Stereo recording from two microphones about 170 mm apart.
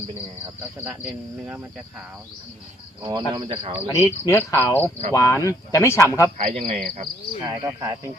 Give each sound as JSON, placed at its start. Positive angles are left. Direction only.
{"t": 0.8, "sound": "speech", "side_deg": -10}
{"t": 3.0, "sound": "speech", "side_deg": -25}
{"t": 4.0, "sound": "speech", "side_deg": 15}
{"t": 6.6, "sound": "speech", "side_deg": -40}
{"t": 7.0, "sound": "cricket", "side_deg": -25}